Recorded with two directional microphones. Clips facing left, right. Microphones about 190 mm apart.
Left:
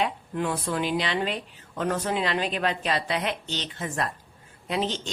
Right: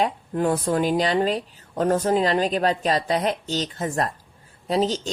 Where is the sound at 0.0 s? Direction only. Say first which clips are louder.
Right 5 dB; 40° right (ahead or behind).